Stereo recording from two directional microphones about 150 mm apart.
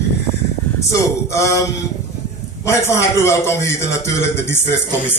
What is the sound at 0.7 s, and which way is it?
A man's voice, 20° left (ahead or behind).